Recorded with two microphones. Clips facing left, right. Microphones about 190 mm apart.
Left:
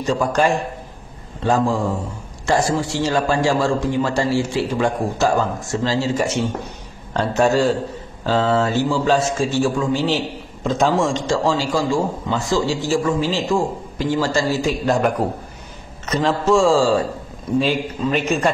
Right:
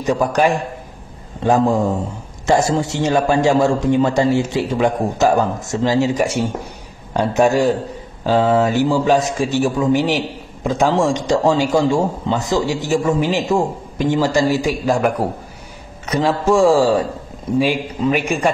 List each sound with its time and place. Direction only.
0.0 s a man's voice: 15° right (ahead or behind)
14.9 s a man's voice: 5° right (ahead or behind)